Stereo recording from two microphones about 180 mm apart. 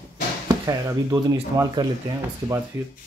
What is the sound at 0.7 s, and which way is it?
Speech, 20° right (ahead or behind).